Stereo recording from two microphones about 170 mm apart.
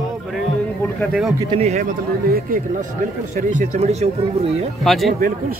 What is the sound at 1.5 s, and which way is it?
Speech, 40° right (ahead or behind).